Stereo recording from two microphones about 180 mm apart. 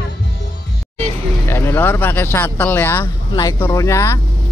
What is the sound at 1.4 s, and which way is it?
Speech, 15° left (ahead or behind).